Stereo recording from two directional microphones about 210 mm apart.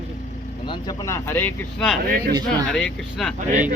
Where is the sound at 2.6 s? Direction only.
5° left (ahead or behind).